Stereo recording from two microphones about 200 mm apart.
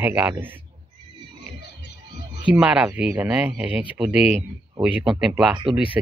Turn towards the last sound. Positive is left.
turn(degrees=-25)  # may be behind; listen again after turning